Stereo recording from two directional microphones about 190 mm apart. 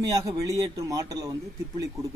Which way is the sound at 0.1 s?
20° right (ahead or behind).